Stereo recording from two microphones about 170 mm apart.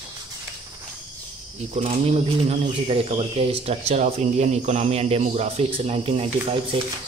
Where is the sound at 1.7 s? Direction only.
40° right (ahead or behind).